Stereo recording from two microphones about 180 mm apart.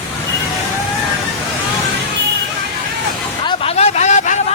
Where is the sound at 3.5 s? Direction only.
35° left (ahead or behind).